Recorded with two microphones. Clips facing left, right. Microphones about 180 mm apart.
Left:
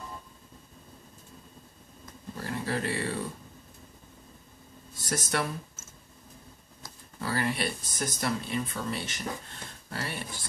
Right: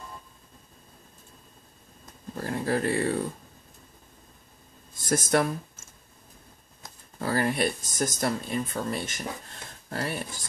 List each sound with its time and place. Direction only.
2.3 s speech: 45° right (ahead or behind)
4.9 s speech: 50° right (ahead or behind)
7.2 s speech: 45° right (ahead or behind)